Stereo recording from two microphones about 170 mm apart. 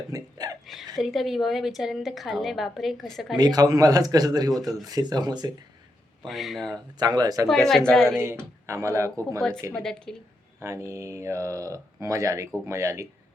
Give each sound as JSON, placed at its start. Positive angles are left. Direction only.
{"t": 0.1, "sound": "a sound", "side_deg": -20}
{"t": 0.6, "sound": "hiccup", "side_deg": 0}
{"t": 0.9, "sound": "a woman's voice", "side_deg": 0}
{"t": 3.3, "sound": "speech", "side_deg": -25}
{"t": 6.2, "sound": "a woman's voice", "side_deg": 0}
{"t": 7.0, "sound": "speech", "side_deg": -25}
{"t": 7.9, "sound": "a woman's voice", "side_deg": 5}
{"t": 8.2, "sound": "speech", "side_deg": -15}
{"t": 9.7, "sound": "a woman's voice", "side_deg": 5}
{"t": 10.6, "sound": "speech", "side_deg": -15}